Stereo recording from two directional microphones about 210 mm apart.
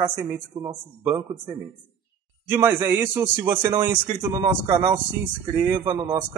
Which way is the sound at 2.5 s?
10° right (ahead or behind).